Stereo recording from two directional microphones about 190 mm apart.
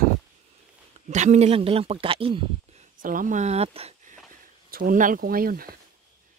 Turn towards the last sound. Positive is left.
turn(degrees=-50)  # may be behind; listen again after turning